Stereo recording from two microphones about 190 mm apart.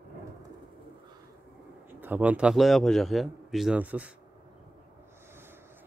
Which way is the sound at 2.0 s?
10° right (ahead or behind).